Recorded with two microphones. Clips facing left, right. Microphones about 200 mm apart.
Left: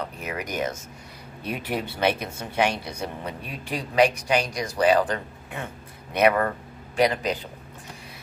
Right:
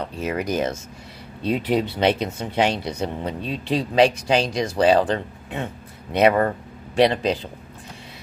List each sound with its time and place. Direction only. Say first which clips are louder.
0.0 s speech: right 6 dB; 30° right (ahead or behind)
1.4 s speech: right 8 dB; 20° right (ahead or behind)